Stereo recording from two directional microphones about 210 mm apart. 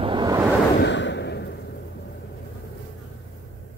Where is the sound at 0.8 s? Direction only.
55° left (ahead or behind).